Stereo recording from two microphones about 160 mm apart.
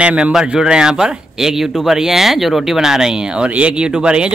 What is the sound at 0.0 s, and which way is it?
Speech, 5° right (ahead or behind).